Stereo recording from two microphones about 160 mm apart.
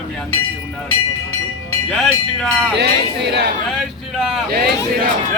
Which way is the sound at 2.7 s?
90° right.